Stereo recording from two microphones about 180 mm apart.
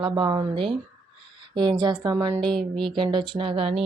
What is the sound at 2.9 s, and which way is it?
Speech, 25° right (ahead or behind).